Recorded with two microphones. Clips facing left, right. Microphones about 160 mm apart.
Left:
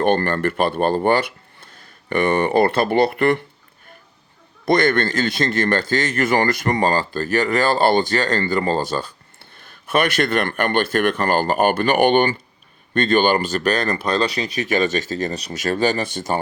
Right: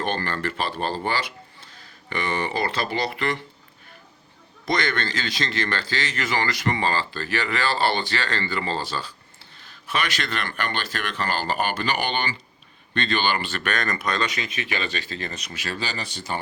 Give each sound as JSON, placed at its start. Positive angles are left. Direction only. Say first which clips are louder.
{"t": 0.0, "sound": "speech", "louder": "left 9 dB", "side_deg": 55}
{"t": 4.6, "sound": "speech", "louder": "left 8 dB", "side_deg": 50}